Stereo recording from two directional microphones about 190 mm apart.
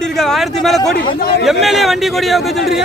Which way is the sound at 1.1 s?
55° left (ahead or behind).